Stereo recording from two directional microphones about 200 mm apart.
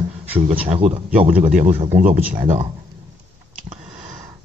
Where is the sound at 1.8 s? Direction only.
35° right (ahead or behind).